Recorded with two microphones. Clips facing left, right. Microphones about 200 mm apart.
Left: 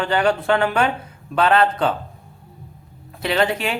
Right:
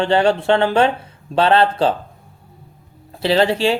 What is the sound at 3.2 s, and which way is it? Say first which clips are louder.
Speech: right 5 dB; 30° right (ahead or behind).